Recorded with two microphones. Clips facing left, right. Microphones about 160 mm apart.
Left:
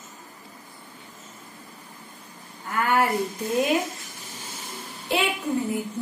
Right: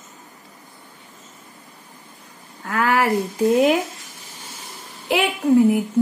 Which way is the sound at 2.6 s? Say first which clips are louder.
Right 3 dB; 90° right.